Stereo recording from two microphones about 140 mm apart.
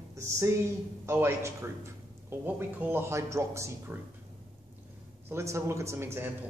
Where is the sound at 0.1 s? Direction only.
20° right (ahead or behind).